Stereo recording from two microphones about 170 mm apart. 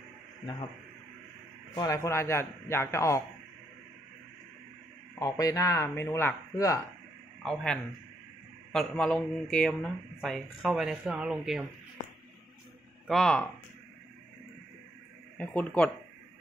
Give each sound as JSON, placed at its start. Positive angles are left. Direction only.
{"t": 1.8, "sound": "a man's voice", "side_deg": 20}
{"t": 5.2, "sound": "speech", "side_deg": 20}
{"t": 7.4, "sound": "speech", "side_deg": 5}
{"t": 13.0, "sound": "speech", "side_deg": 0}
{"t": 15.3, "sound": "a man's voice", "side_deg": 10}